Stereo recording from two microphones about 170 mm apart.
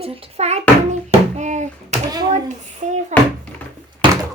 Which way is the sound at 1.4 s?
45° right (ahead or behind).